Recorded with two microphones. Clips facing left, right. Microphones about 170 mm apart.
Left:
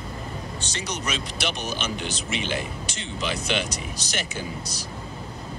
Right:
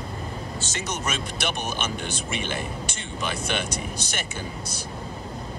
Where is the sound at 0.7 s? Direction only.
50° right (ahead or behind).